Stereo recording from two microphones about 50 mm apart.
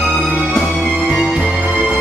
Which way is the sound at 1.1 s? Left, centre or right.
Centre.